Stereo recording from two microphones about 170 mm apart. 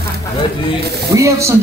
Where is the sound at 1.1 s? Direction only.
15° right (ahead or behind).